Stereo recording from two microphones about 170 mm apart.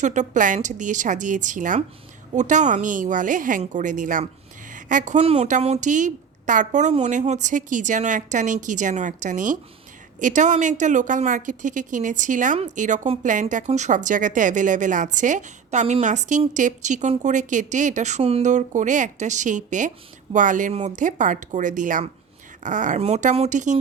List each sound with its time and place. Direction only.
0.0 s a woman's voice: 45° right (ahead or behind)